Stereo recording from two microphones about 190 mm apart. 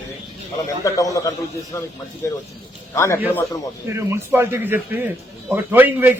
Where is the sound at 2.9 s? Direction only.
15° left (ahead or behind).